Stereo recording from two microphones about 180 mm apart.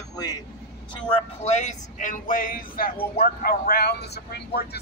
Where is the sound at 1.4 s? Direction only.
40° left (ahead or behind); by 4.8 s 65° left (ahead or behind).